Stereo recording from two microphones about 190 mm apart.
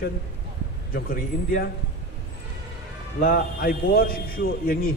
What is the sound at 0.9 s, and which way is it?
Speech, 50° left (ahead or behind).